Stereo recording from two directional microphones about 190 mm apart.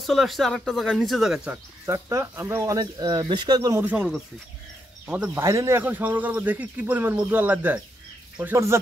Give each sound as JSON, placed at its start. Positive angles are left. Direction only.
{"t": 0.0, "sound": "speech", "side_deg": 0}
{"t": 1.9, "sound": "speech", "side_deg": -15}
{"t": 3.8, "sound": "speech", "side_deg": -5}